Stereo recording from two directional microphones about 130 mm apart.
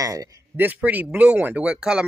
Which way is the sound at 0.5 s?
10° right (ahead or behind).